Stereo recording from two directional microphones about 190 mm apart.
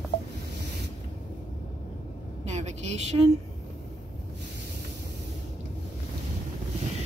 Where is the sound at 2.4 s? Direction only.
35° right (ahead or behind).